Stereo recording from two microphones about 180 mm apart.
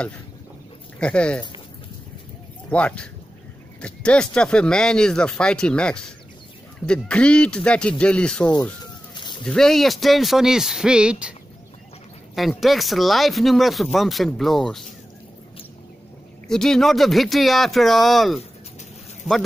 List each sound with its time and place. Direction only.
0.9 s speech: 5° left (ahead or behind)
2.7 s speech: 5° left (ahead or behind)
9.1 s cat: 25° left (ahead or behind)
9.4 s speech: 5° left (ahead or behind)
12.4 s speech: centre (ahead or behind)
16.4 s speech: 5° left (ahead or behind)